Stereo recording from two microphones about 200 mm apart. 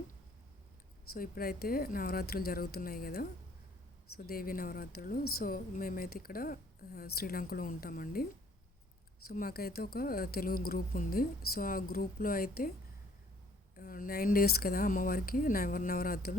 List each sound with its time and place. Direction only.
1.1 s a woman's voice: 50° left (ahead or behind)
13.7 s a woman's voice: 45° left (ahead or behind)